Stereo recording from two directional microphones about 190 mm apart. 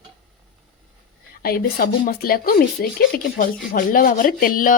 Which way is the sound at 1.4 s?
50° left (ahead or behind).